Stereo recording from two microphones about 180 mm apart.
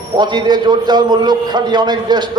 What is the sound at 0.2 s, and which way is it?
A man's voice, 25° right (ahead or behind).